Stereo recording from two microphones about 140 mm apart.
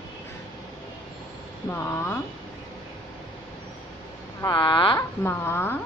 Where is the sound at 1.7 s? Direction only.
15° left (ahead or behind).